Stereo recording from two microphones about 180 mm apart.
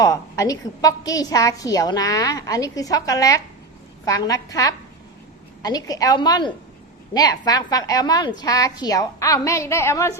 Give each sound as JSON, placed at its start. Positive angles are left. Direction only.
{"t": 0.0, "sound": "a woman's voice", "side_deg": 20}